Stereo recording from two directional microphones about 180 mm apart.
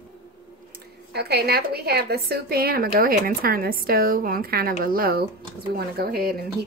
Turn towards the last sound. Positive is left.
turn(degrees=-55)  # may be behind; listen again after turning